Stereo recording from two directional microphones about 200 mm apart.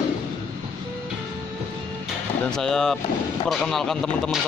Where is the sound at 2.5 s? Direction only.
5° left (ahead or behind).